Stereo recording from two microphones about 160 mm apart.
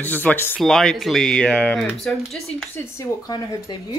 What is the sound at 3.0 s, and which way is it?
Speech, 20° left (ahead or behind).